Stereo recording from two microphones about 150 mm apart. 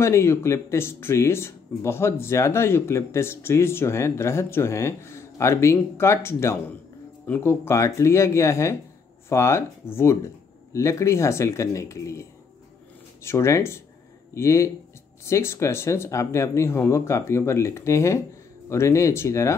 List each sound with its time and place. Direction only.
0.0 s speech: 20° left (ahead or behind)